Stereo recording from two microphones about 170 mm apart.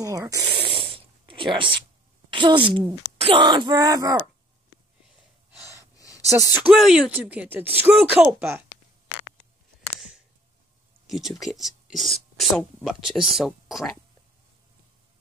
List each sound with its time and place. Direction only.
0.0 s speech: 20° right (ahead or behind)
0.6 s snort: 30° right (ahead or behind)
2.3 s speech: 30° right (ahead or behind)
5.9 s a sound: 20° left (ahead or behind)
6.5 s speech: 5° right (ahead or behind)
9.9 s a sound: 5° right (ahead or behind)
11.1 s speech: centre (ahead or behind)